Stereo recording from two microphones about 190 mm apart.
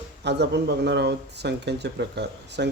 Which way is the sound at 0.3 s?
60° right (ahead or behind).